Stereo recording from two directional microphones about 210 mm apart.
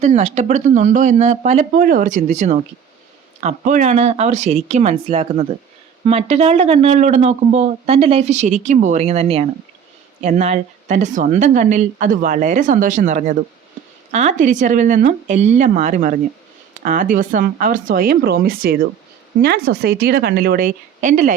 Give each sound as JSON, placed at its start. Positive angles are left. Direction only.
{"t": 0.0, "sound": "a woman's voice", "side_deg": -30}